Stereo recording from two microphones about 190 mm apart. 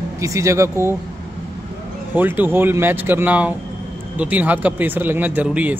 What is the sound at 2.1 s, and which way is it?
A man's voice, 10° right (ahead or behind).